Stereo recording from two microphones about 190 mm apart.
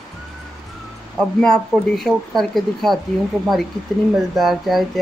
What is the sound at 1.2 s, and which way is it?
Speech, 5° left (ahead or behind).